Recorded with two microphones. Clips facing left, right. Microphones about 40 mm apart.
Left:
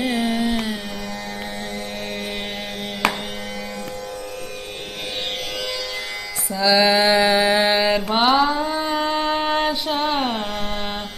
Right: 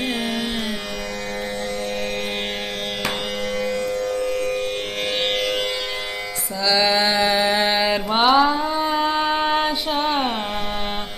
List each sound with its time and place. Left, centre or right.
0.0 s carnatic music: right
6.6 s mantra: centre